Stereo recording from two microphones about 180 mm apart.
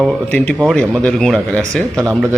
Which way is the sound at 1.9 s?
15° right (ahead or behind).